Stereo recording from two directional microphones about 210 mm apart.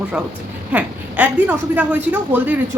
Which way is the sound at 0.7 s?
5° right (ahead or behind).